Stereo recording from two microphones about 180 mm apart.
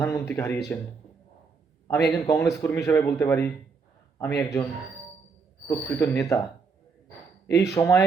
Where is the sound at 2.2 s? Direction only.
15° left (ahead or behind).